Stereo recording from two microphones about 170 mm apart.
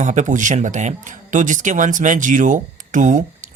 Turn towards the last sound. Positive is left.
turn(degrees=-45)  # may be behind; listen again after turning